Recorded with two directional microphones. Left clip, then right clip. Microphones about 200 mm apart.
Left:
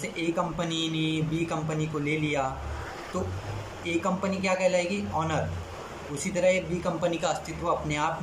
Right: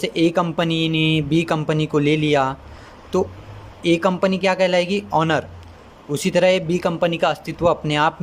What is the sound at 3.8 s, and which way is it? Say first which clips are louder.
Speech: right 11 dB; 55° right (ahead or behind).